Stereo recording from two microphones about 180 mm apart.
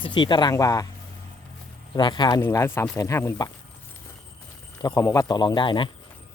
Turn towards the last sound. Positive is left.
turn(degrees=25)  # may be behind; listen again after turning